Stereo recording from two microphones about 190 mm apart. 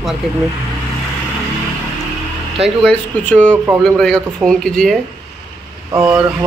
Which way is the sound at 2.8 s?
5° left (ahead or behind).